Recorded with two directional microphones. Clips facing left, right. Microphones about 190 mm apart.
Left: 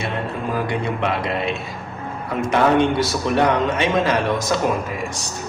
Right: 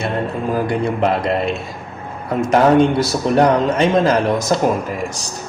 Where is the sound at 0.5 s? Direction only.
40° right (ahead or behind).